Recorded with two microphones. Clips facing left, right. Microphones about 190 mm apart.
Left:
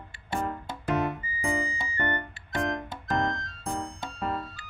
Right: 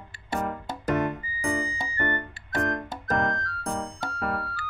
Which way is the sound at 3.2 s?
20° left (ahead or behind).